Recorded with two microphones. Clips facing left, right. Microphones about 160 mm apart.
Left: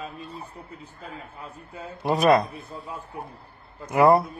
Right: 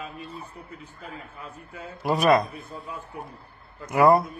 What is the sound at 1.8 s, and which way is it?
Speech, 30° left (ahead or behind).